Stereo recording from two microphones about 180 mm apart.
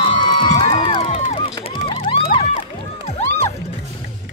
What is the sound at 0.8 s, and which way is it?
Music, 30° left (ahead or behind).